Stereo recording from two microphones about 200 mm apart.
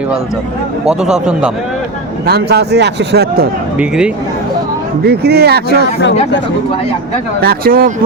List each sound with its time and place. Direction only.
0.9 s speech: 5° right (ahead or behind)
2.2 s a man's voice: 50° right (ahead or behind)
3.8 s speech: 5° right (ahead or behind)
5.0 s a man's voice: 55° right (ahead or behind)
7.4 s a man's voice: 45° right (ahead or behind)